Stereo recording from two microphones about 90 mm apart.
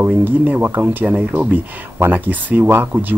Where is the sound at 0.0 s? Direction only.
20° right (ahead or behind).